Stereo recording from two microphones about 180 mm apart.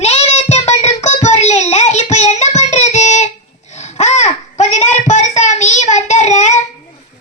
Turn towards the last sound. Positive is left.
turn(degrees=40)  # may be behind; listen again after turning